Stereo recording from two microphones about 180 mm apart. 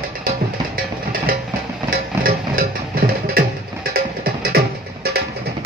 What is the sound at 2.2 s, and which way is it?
Music, 55° right (ahead or behind).